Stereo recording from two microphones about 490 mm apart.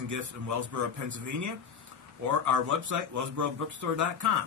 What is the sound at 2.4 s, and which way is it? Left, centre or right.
Speech, right.